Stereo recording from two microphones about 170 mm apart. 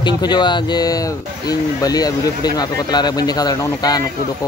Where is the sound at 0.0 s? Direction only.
25° left (ahead or behind).